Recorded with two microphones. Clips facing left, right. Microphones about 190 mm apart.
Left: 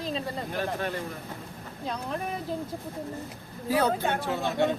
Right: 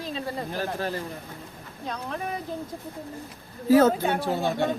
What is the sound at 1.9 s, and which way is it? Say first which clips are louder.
Speech: even; centre (ahead or behind).